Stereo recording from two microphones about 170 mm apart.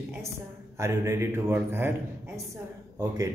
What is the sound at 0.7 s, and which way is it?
Speech, 15° right (ahead or behind).